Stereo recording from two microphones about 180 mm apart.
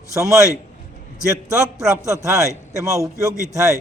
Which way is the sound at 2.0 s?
15° right (ahead or behind).